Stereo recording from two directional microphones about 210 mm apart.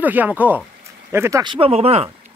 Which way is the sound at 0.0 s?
10° right (ahead or behind).